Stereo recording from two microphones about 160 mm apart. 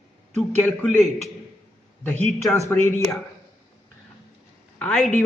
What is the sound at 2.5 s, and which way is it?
Speech, 15° left (ahead or behind).